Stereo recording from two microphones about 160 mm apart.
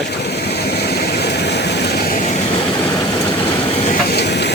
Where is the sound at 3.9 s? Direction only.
85° left.